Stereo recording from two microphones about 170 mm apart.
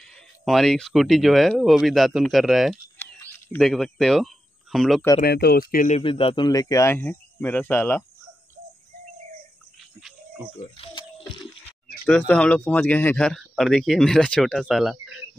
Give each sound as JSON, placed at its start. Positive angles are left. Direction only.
{"t": 0.0, "sound": "speech", "side_deg": 0}
{"t": 3.0, "sound": "a sound", "side_deg": 10}
{"t": 5.2, "sound": "speech", "side_deg": 70}
{"t": 5.9, "sound": "speech", "side_deg": 30}
{"t": 10.8, "sound": "a sound", "side_deg": 35}
{"t": 12.1, "sound": "speech", "side_deg": 5}